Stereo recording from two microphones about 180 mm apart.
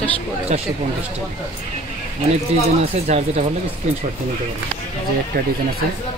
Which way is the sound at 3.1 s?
40° right (ahead or behind).